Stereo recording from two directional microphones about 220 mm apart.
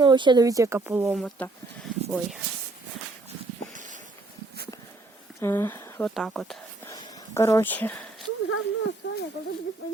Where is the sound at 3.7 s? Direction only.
35° right (ahead or behind).